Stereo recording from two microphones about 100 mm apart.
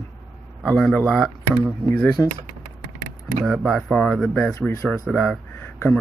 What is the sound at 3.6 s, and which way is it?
Speech, 10° left (ahead or behind).